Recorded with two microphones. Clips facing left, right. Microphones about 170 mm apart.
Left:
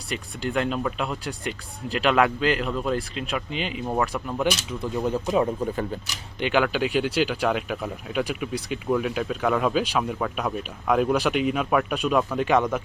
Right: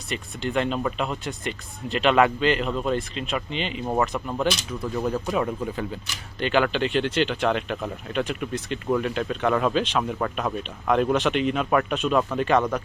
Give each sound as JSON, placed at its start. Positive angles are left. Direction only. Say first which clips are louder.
{"t": 0.1, "sound": "speech", "louder": "even", "side_deg": 5}
{"t": 5.0, "sound": "speech", "louder": "left 3 dB", "side_deg": 15}
{"t": 6.4, "sound": "speech", "louder": "even", "side_deg": 10}